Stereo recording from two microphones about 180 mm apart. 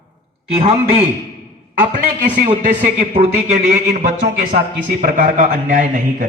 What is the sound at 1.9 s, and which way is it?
A man's voice, 45° right (ahead or behind).